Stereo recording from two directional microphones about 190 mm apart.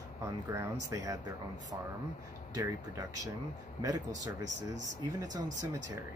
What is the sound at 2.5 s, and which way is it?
Speech, 15° right (ahead or behind).